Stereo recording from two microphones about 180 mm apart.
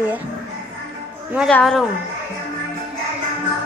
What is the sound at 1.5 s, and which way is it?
Speech, centre (ahead or behind).